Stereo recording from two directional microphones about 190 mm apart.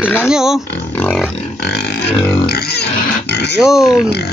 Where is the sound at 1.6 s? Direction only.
60° left (ahead or behind).